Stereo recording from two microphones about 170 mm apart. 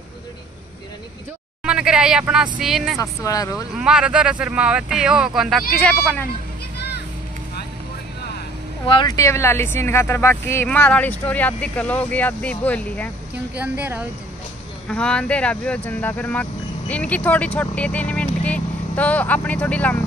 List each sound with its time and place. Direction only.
1.6 s speech: 5° right (ahead or behind)
3.0 s speech: 20° left (ahead or behind)
3.7 s speech: 5° right (ahead or behind)
8.8 s speech: 25° left (ahead or behind); by 13.1 s 10° left (ahead or behind)
13.6 s a woman's voice: 10° right (ahead or behind)
14.9 s speech: 5° left (ahead or behind)